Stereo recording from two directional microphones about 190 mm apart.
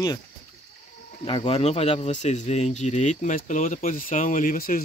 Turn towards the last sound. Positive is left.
turn(degrees=45)  # may be behind; listen again after turning